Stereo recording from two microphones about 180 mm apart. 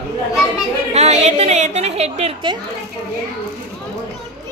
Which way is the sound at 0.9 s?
40° right (ahead or behind).